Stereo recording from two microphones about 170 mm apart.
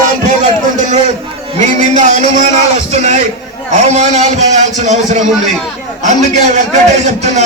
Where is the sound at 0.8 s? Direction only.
45° right (ahead or behind).